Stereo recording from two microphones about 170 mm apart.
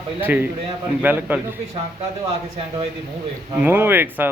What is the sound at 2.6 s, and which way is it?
Speech, 35° right (ahead or behind).